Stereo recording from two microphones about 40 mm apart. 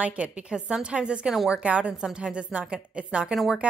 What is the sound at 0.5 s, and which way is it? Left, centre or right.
A woman's voice, centre.